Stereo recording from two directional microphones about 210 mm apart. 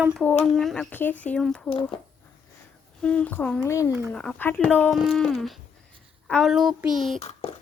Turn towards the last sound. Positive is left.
turn(degrees=30)  # may be behind; listen again after turning